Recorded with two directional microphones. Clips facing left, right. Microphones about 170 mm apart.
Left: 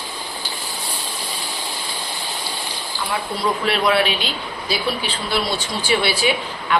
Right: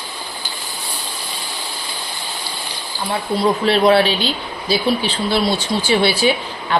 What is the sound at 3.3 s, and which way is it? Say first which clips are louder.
Speech: right 7 dB; 30° right (ahead or behind).